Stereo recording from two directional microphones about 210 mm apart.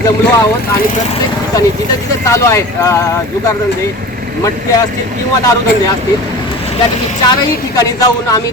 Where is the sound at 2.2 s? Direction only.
15° left (ahead or behind).